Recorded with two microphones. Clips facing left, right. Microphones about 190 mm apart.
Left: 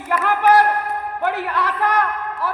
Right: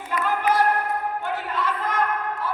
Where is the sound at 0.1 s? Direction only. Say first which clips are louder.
Left 7 dB; 70° left (ahead or behind).